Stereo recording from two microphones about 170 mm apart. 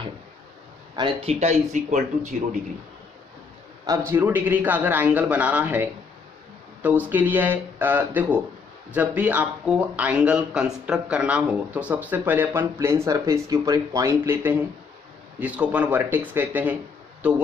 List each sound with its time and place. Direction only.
0.9 s speech: 30° right (ahead or behind)
3.8 s speech: 20° right (ahead or behind)